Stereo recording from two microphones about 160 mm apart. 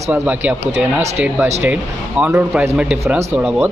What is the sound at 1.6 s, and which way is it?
Speech, 10° right (ahead or behind).